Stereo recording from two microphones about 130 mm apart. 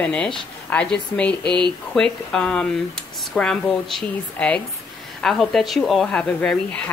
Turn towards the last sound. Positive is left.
turn(degrees=10)  # may be behind; listen again after turning